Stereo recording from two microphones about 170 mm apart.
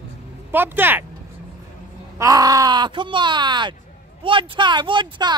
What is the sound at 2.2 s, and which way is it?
Speech, 20° right (ahead or behind).